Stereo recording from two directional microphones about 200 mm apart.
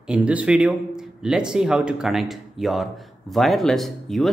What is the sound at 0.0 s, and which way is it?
A man's voice, 5° right (ahead or behind).